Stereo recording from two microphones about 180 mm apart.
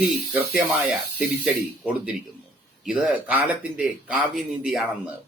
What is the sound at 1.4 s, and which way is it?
Speech, 5° right (ahead or behind).